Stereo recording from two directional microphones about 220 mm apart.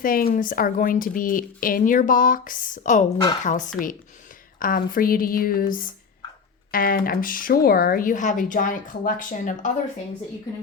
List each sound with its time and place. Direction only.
0.0 s speech: 40° left (ahead or behind)